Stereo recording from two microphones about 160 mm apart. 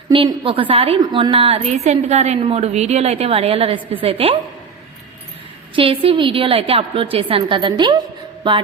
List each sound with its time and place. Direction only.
0.1 s a woman's voice: 30° right (ahead or behind)
5.7 s a woman's voice: 35° right (ahead or behind)
8.4 s a sound: 30° right (ahead or behind)